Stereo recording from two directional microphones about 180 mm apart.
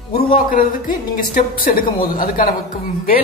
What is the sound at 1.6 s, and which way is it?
Speech, 55° left (ahead or behind).